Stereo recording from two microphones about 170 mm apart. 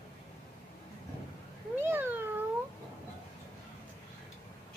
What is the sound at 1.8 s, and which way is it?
Cat, 10° right (ahead or behind).